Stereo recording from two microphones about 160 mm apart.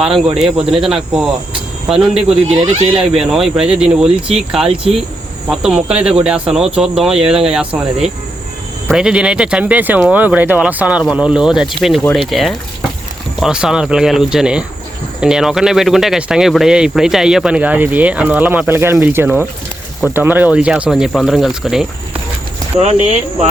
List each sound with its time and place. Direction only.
0.3 s speech: centre (ahead or behind)
2.1 s speech: 40° right (ahead or behind)
3.0 s speech: 5° right (ahead or behind)
8.9 s speech: 5° right (ahead or behind)
22.8 s speech: 45° right (ahead or behind)